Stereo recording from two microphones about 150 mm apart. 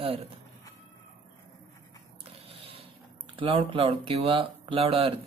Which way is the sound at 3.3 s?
35° right (ahead or behind).